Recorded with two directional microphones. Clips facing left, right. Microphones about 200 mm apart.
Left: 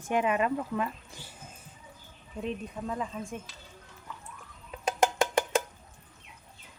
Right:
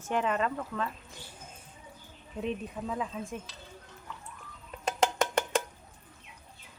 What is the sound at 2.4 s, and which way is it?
Speech, centre (ahead or behind).